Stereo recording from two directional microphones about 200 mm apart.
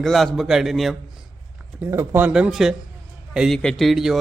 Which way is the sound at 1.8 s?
15° right (ahead or behind).